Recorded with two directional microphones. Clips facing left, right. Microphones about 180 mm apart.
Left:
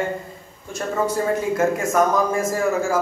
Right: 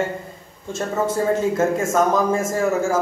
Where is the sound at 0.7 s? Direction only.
25° right (ahead or behind).